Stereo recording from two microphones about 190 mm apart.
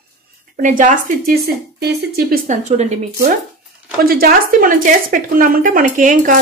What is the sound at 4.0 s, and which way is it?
A woman's voice, 50° right (ahead or behind).